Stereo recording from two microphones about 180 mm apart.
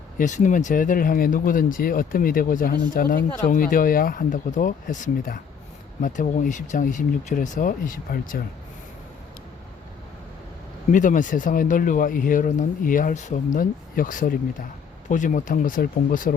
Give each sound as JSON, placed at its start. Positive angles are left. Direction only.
{"t": 0.2, "sound": "speech", "side_deg": 45}
{"t": 10.9, "sound": "speech", "side_deg": 45}